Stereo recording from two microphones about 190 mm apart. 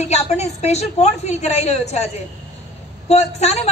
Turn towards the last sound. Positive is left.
turn(degrees=35)  # may be behind; listen again after turning